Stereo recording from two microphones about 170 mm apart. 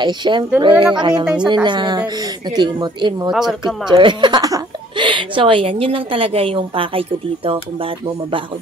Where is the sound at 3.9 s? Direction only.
25° right (ahead or behind).